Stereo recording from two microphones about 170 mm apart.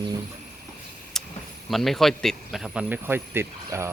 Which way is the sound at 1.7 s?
Centre (ahead or behind).